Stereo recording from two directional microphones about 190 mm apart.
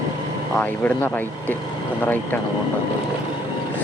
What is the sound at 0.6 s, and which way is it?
Speech, 10° left (ahead or behind).